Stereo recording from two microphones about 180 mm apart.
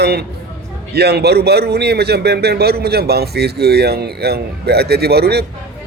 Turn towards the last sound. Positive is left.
turn(degrees=-65)  # may be behind; listen again after turning